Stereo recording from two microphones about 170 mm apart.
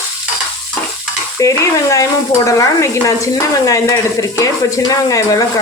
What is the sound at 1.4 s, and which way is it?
Stir, 20° left (ahead or behind).